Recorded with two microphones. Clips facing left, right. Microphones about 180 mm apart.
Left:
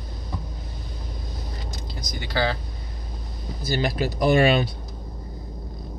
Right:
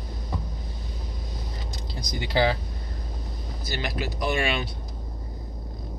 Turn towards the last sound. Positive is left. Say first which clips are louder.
# left 8 dB
turn(degrees=35)  # may be behind; listen again after turning